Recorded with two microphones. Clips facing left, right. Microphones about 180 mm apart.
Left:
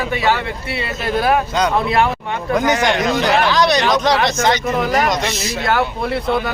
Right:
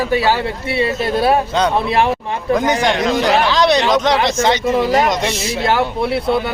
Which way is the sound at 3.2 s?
25° right (ahead or behind).